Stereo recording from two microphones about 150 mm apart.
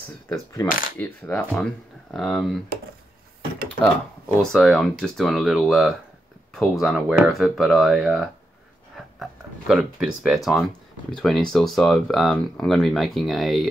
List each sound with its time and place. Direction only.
0.3 s speech: 20° left (ahead or behind)
0.7 s speech: 65° left (ahead or behind)
0.9 s speech: 10° left (ahead or behind)
4.4 s speech: 5° left (ahead or behind)